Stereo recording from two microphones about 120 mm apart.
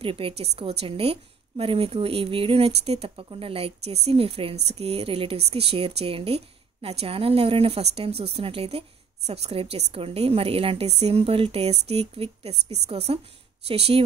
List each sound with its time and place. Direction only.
0.0 s a woman's voice: 50° right (ahead or behind)